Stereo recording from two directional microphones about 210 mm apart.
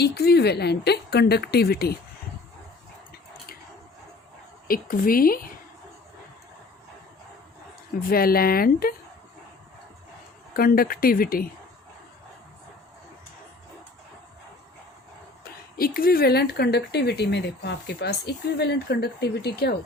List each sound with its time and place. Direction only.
0.0 s speech: 50° left (ahead or behind)
4.7 s speech: 45° left (ahead or behind)
8.0 s speech: 45° left (ahead or behind)
10.5 s speech: 45° left (ahead or behind)
16.0 s speech: 45° left (ahead or behind)